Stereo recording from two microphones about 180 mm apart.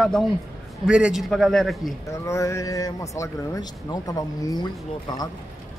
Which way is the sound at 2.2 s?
15° left (ahead or behind).